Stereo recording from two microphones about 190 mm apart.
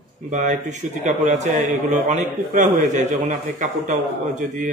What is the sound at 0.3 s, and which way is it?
A man's voice, 40° right (ahead or behind).